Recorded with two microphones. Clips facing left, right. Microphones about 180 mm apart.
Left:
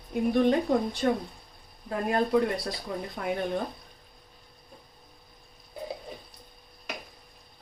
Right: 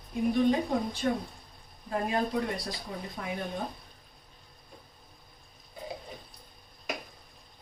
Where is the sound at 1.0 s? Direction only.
55° left (ahead or behind).